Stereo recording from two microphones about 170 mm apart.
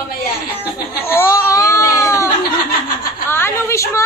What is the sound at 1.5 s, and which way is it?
Baby cry, 20° left (ahead or behind).